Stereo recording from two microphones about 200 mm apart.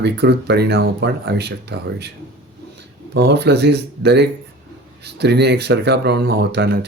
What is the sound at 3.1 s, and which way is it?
Speech, 60° right (ahead or behind).